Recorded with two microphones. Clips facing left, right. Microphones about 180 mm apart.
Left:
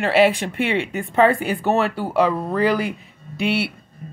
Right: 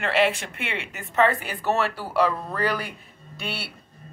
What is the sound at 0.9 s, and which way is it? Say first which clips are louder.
Speech: left 3 dB; 30° left (ahead or behind).